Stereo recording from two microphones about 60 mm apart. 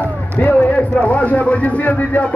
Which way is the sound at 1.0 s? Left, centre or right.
Left.